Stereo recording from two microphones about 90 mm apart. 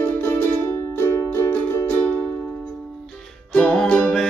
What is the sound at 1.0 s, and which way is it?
Music, 25° left (ahead or behind).